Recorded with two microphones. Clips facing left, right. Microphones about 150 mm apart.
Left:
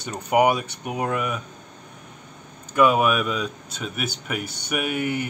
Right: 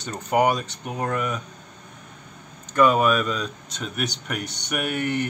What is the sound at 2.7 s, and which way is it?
Speech, 10° left (ahead or behind).